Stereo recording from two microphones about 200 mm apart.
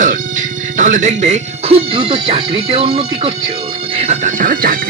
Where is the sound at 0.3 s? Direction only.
40° right (ahead or behind).